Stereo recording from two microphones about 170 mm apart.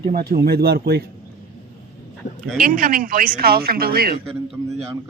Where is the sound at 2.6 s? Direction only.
55° right (ahead or behind).